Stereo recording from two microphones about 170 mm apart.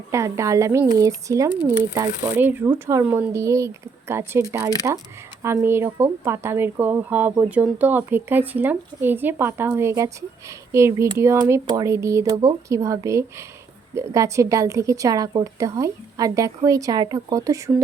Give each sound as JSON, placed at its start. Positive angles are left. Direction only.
{"t": 0.1, "sound": "a woman's voice", "side_deg": -15}